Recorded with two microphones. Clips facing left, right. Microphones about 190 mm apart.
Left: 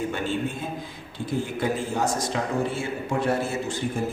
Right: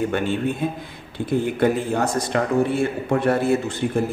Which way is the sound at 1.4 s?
60° right (ahead or behind).